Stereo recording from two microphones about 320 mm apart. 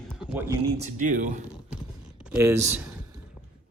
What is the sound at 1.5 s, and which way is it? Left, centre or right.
Typing, centre.